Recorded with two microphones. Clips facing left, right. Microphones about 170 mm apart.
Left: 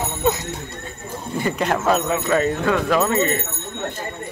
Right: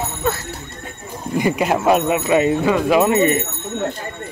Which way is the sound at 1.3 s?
10° right (ahead or behind).